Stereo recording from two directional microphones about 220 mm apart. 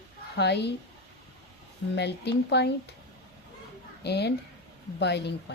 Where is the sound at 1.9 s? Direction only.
50° left (ahead or behind).